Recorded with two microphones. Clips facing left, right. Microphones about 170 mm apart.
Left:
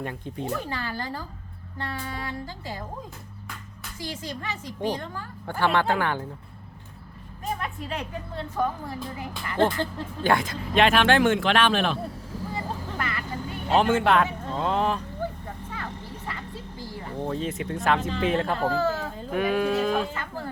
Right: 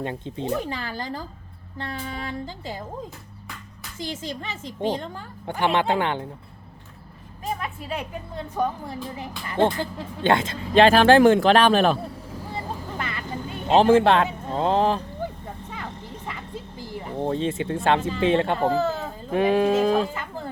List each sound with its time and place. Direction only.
0.0 s speech: 25° right (ahead or behind)
3.9 s speech: 25° right (ahead or behind)
7.6 s a woman's voice: 10° right (ahead or behind); by 11.9 s 40° right (ahead or behind)
12.5 s vehicle: 20° right (ahead or behind)
15.7 s a sound: 20° right (ahead or behind)
18.2 s speech: 25° right (ahead or behind)